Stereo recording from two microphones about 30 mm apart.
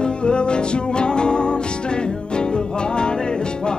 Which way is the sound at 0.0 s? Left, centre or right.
Left.